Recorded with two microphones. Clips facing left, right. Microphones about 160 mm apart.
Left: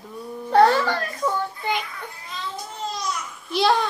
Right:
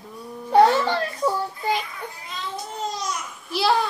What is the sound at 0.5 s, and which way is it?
A child's voice, 20° right (ahead or behind).